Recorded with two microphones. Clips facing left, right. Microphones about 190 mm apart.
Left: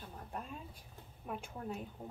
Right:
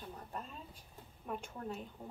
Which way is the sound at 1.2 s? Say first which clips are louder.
Even; 10° left (ahead or behind).